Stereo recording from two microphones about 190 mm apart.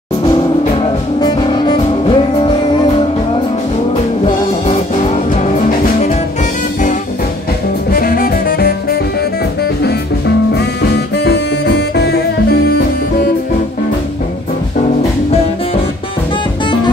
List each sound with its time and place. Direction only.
1.2 s music: 25° left (ahead or behind)
3.9 s music: 30° left (ahead or behind)
7.9 s saxophone: 50° left (ahead or behind)
11.2 s music: 60° left (ahead or behind)